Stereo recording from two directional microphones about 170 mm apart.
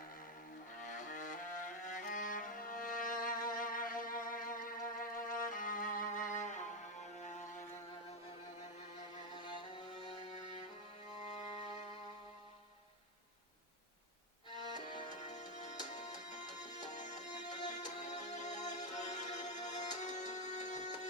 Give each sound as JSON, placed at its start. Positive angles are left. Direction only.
{"t": 0.8, "sound": "music", "side_deg": 45}
{"t": 9.3, "sound": "music", "side_deg": 25}
{"t": 11.2, "sound": "music", "side_deg": 45}
{"t": 14.8, "sound": "music", "side_deg": 25}
{"t": 15.2, "sound": "music", "side_deg": 45}